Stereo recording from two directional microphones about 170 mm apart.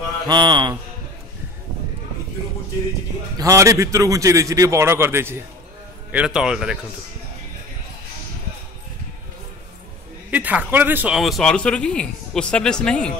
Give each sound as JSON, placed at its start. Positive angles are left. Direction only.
{"t": 0.3, "sound": "music", "side_deg": -25}
{"t": 3.3, "sound": "a man's voice", "side_deg": -20}
{"t": 10.3, "sound": "speech", "side_deg": -10}